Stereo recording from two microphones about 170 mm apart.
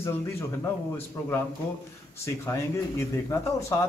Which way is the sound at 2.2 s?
15° left (ahead or behind).